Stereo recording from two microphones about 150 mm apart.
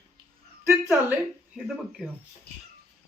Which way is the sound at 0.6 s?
10° right (ahead or behind).